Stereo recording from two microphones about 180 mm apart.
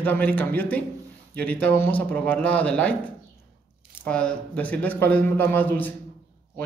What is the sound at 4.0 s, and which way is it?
Speech, 5° left (ahead or behind).